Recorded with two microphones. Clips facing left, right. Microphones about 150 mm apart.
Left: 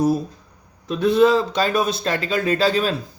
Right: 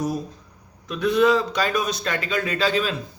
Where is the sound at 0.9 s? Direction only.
30° left (ahead or behind).